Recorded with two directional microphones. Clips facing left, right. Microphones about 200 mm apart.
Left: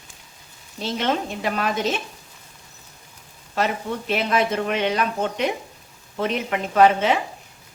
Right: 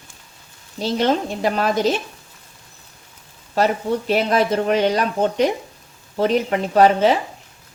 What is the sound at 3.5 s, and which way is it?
Speech, 40° right (ahead or behind).